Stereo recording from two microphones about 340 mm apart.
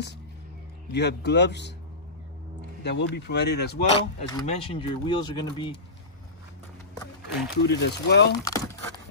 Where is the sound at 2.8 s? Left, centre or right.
Left.